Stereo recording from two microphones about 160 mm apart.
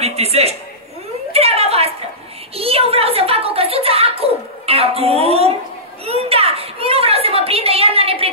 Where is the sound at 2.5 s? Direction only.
40° right (ahead or behind).